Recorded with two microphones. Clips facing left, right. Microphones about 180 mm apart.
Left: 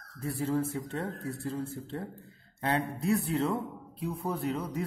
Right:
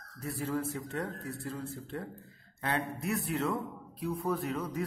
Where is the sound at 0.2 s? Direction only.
30° left (ahead or behind).